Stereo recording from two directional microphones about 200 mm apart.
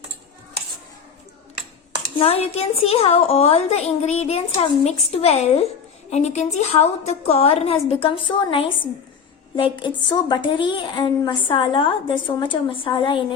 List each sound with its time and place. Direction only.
2.1 s a woman's voice: 30° left (ahead or behind)